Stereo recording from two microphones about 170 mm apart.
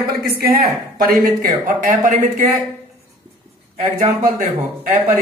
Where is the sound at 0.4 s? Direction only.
60° right (ahead or behind).